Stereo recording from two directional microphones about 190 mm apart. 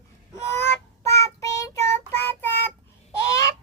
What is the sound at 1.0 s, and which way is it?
Child singing, 15° left (ahead or behind).